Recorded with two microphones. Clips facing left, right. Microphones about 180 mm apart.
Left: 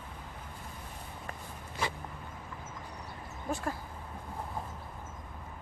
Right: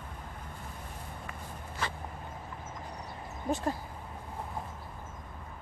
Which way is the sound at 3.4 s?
20° right (ahead or behind).